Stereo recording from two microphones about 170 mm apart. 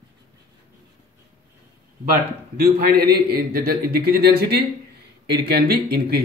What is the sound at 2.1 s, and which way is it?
Speech, 65° right (ahead or behind).